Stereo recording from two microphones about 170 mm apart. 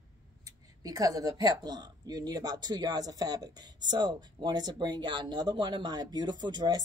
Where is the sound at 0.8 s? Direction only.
20° right (ahead or behind).